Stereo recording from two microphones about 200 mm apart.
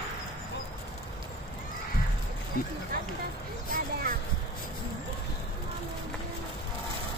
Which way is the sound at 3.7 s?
45° right (ahead or behind).